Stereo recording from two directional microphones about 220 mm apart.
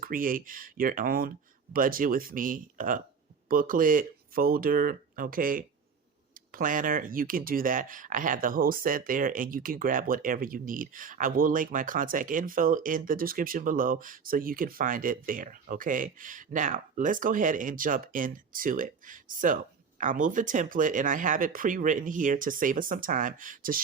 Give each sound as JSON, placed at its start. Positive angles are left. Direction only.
{"t": 0.0, "sound": "speech", "side_deg": -40}